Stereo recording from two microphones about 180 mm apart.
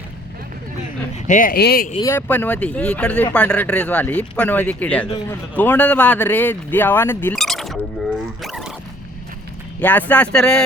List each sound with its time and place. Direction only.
1.3 s speech: 50° left (ahead or behind)
2.0 s speech: 15° left (ahead or behind)
7.3 s a sound: centre (ahead or behind)
8.4 s zipper: centre (ahead or behind)
9.8 s speech: 10° left (ahead or behind)